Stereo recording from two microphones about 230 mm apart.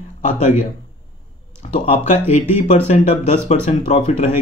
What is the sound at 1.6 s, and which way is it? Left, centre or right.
Speech, left.